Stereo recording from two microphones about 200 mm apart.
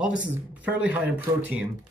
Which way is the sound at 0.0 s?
5° right (ahead or behind).